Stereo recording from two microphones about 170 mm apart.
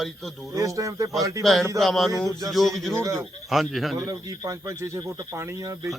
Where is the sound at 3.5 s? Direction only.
Centre (ahead or behind).